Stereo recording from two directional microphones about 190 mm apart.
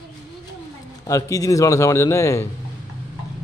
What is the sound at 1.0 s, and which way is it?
A man's voice, 15° left (ahead or behind).